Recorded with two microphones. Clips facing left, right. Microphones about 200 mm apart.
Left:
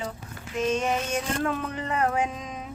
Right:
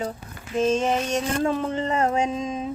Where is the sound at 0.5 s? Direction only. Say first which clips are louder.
Right 4 dB; 30° right (ahead or behind).